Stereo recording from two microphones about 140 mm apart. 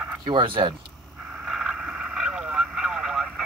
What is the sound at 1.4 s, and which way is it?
Vehicle, 5° right (ahead or behind).